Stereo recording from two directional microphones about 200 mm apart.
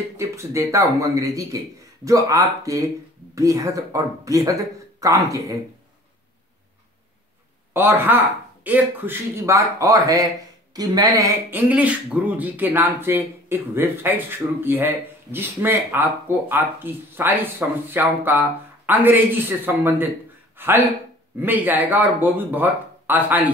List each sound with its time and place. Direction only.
0.2 s speech: 15° right (ahead or behind)
7.7 s speech: 10° right (ahead or behind)